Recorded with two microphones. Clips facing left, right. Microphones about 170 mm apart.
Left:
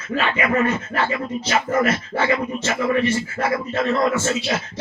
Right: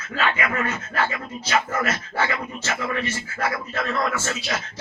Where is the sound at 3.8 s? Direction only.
25° left (ahead or behind).